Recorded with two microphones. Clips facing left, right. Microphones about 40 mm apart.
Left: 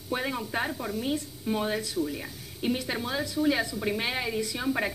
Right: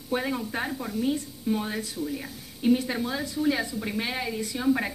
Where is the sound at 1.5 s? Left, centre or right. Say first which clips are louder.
Even; centre.